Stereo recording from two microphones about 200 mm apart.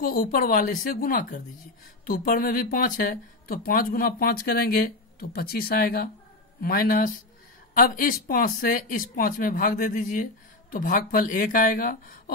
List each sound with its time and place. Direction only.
0.0 s speech: 45° left (ahead or behind)